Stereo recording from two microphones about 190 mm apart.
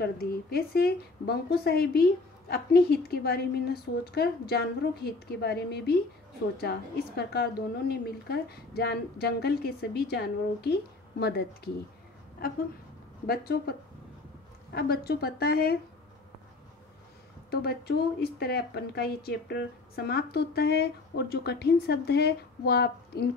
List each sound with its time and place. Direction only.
0.0 s speech: 55° left (ahead or behind)
7.9 s speech: 55° left (ahead or behind)
17.5 s speech: 55° left (ahead or behind)